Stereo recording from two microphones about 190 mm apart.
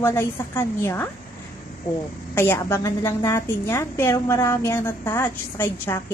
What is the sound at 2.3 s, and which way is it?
A woman's voice, 10° left (ahead or behind).